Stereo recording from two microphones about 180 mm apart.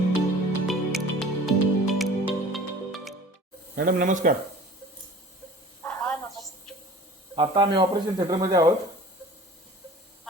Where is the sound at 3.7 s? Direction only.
50° right (ahead or behind).